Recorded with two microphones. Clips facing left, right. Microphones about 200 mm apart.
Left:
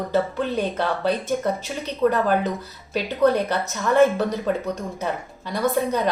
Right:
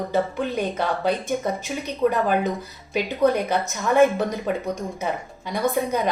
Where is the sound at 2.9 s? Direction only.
10° right (ahead or behind).